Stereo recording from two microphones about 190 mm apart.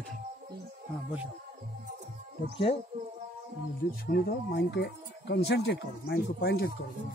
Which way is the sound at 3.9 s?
55° left (ahead or behind).